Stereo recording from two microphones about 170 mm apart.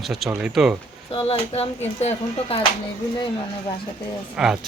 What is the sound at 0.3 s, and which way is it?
Speech, 5° right (ahead or behind).